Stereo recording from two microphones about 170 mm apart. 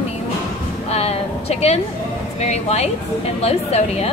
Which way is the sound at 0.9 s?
35° left (ahead or behind).